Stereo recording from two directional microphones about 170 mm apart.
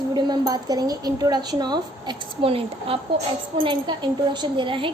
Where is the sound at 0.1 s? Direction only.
25° right (ahead or behind).